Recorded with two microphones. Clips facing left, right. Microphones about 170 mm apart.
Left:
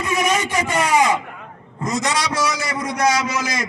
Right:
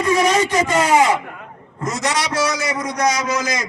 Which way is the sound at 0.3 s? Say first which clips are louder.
Right 4 dB; 30° right (ahead or behind).